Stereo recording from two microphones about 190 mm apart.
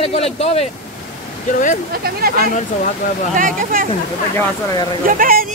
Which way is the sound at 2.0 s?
55° right (ahead or behind).